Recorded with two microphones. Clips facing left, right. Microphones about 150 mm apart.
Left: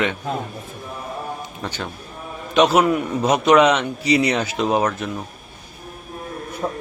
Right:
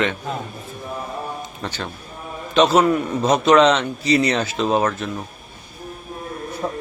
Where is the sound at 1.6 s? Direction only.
10° left (ahead or behind).